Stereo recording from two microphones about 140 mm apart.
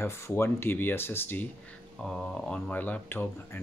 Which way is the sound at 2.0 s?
Centre (ahead or behind).